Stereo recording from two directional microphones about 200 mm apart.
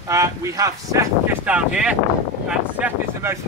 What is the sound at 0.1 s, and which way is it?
Speech, 15° right (ahead or behind).